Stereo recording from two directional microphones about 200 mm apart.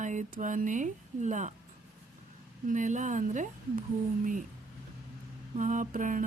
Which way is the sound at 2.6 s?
40° right (ahead or behind).